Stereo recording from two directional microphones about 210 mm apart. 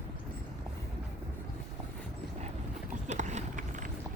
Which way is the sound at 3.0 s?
35° right (ahead or behind).